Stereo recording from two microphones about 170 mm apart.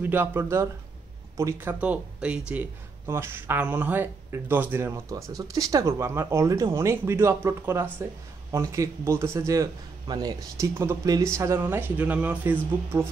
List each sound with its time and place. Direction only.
0.0 s speech: 10° right (ahead or behind)